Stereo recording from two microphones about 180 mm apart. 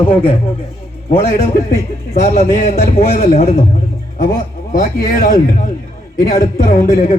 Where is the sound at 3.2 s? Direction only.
35° left (ahead or behind).